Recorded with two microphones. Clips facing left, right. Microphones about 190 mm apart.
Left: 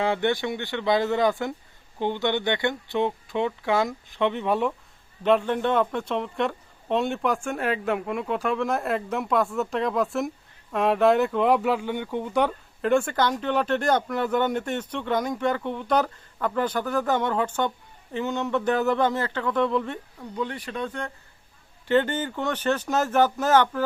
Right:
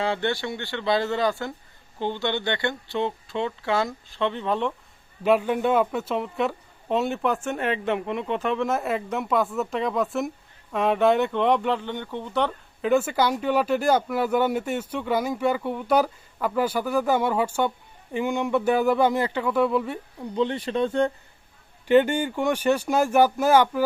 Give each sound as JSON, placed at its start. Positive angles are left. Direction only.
{"t": 0.0, "sound": "speech", "side_deg": 15}
{"t": 5.2, "sound": "speech", "side_deg": -10}
{"t": 12.8, "sound": "speech", "side_deg": -5}
{"t": 20.3, "sound": "speech", "side_deg": -25}
{"t": 21.8, "sound": "speech", "side_deg": -15}